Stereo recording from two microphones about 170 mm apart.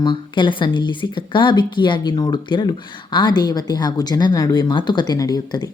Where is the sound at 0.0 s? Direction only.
30° left (ahead or behind).